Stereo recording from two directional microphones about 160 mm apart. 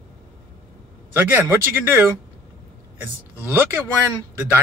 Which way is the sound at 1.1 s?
10° right (ahead or behind).